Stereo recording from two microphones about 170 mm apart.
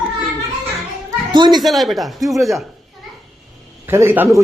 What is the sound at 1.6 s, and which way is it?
Speech, centre (ahead or behind).